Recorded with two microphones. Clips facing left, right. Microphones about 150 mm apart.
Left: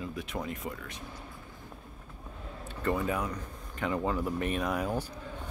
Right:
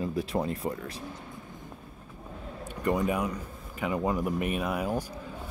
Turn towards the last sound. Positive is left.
turn(degrees=-10)  # may be behind; listen again after turning